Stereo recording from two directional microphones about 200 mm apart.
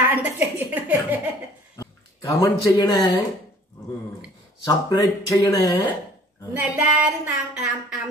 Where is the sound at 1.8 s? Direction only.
15° left (ahead or behind).